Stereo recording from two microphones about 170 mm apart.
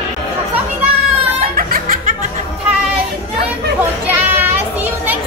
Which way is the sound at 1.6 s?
55° right (ahead or behind).